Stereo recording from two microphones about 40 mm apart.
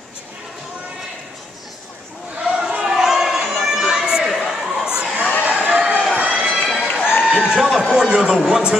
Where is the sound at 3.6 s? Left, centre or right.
Centre.